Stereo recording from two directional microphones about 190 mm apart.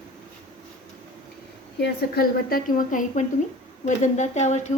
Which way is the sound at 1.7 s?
60° left (ahead or behind).